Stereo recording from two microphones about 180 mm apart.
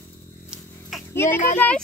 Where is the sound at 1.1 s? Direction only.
15° left (ahead or behind).